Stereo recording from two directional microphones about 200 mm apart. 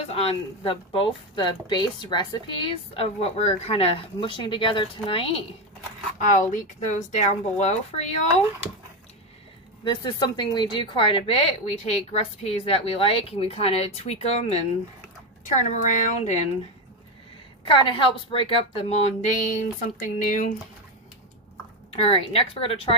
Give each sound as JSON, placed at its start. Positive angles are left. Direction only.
{"t": 0.0, "sound": "a woman's voice", "side_deg": 30}
{"t": 6.1, "sound": "speech", "side_deg": 40}
{"t": 9.8, "sound": "a woman's voice", "side_deg": 20}
{"t": 17.6, "sound": "a woman's voice", "side_deg": 25}
{"t": 21.9, "sound": "a woman's voice", "side_deg": 30}